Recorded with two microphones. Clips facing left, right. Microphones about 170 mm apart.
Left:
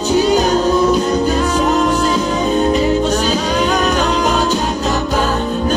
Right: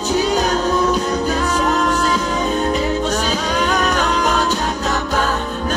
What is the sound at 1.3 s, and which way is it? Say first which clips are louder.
Music: left 3 dB; 10° left (ahead or behind).